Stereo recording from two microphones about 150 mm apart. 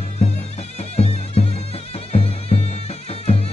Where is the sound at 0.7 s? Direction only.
40° left (ahead or behind).